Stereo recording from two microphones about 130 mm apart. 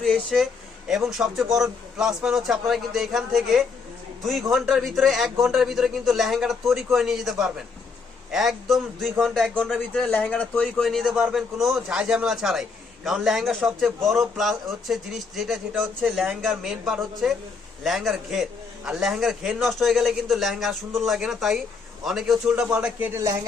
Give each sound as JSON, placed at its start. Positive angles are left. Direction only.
{"t": 0.0, "sound": "a man's voice", "side_deg": 5}